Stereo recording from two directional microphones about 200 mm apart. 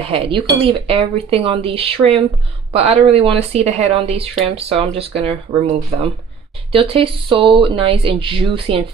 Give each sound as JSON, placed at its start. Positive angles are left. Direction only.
{"t": 0.0, "sound": "speech", "side_deg": -30}